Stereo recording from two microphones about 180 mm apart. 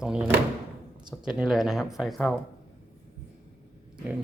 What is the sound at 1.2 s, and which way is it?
Speech, 5° right (ahead or behind).